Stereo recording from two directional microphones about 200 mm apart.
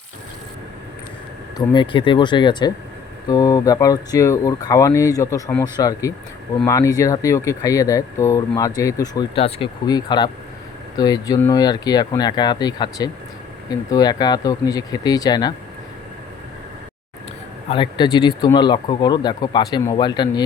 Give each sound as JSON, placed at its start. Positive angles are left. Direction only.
{"t": 1.5, "sound": "speech", "side_deg": 20}
{"t": 17.7, "sound": "speech", "side_deg": 25}